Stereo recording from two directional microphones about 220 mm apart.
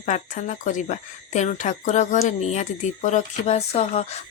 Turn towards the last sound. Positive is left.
turn(degrees=30)  # may be behind; listen again after turning